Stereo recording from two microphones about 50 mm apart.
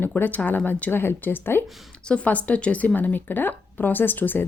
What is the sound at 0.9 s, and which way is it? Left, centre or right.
Speech, left.